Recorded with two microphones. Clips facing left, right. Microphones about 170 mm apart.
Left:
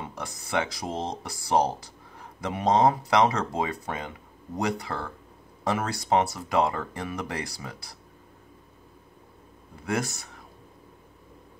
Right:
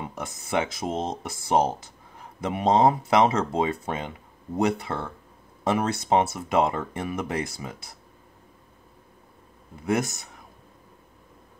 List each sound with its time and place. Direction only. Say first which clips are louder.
0.0 s speech: right 2 dB; 20° right (ahead or behind)
9.8 s speech: right 4 dB; 20° right (ahead or behind)